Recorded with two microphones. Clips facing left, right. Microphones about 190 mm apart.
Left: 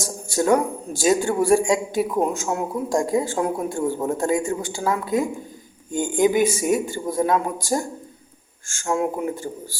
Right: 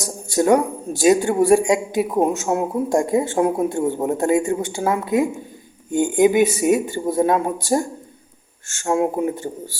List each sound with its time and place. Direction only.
0.0 s a man's voice: 20° right (ahead or behind)
8.6 s a man's voice: 25° right (ahead or behind)